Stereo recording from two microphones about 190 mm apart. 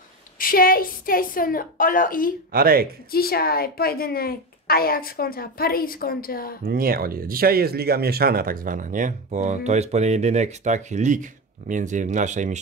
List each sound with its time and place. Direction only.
0.4 s a woman's voice: 50° left (ahead or behind)
2.5 s speech: 50° right (ahead or behind)
3.1 s a woman's voice: 50° left (ahead or behind)
6.6 s speech: 50° right (ahead or behind)